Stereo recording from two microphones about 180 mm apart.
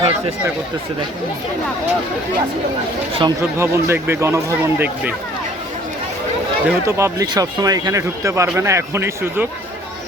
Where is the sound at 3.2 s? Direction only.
15° right (ahead or behind).